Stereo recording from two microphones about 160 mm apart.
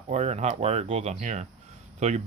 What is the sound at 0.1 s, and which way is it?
Speech, 45° right (ahead or behind).